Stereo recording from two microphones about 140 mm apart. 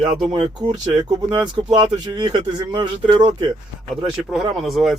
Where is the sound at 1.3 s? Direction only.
35° right (ahead or behind).